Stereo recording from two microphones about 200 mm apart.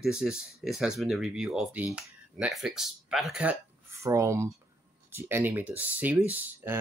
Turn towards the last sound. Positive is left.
turn(degrees=-10)  # may be behind; listen again after turning